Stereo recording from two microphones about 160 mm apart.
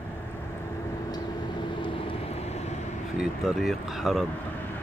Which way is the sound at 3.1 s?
Centre (ahead or behind).